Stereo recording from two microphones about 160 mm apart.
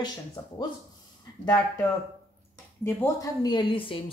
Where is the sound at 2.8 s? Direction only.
20° left (ahead or behind); by 4.0 s 35° left (ahead or behind).